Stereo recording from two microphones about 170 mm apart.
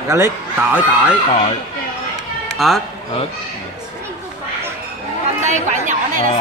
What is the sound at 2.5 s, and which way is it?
Speech, centre (ahead or behind).